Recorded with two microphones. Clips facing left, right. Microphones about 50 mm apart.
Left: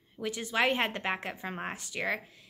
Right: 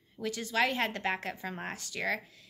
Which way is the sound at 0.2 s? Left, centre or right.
Left.